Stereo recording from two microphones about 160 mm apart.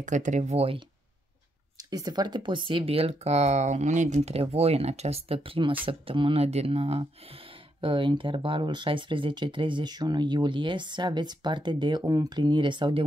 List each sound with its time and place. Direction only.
0.0 s speech: 50° right (ahead or behind)
1.8 s speech: 25° right (ahead or behind)